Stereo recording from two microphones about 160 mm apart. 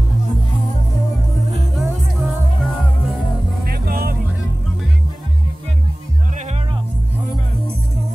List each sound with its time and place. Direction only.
1.8 s music: centre (ahead or behind)
3.6 s music: 70° right (ahead or behind)
6.3 s music: 45° right (ahead or behind)